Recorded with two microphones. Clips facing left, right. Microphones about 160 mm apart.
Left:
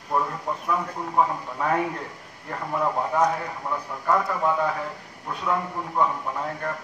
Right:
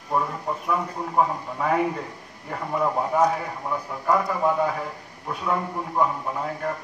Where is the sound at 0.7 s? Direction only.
Centre (ahead or behind).